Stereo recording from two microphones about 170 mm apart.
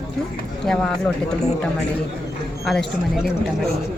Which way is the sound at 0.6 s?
5° left (ahead or behind).